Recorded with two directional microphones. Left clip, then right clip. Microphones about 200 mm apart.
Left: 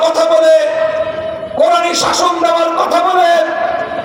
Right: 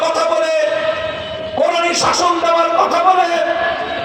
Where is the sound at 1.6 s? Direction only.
60° left (ahead or behind).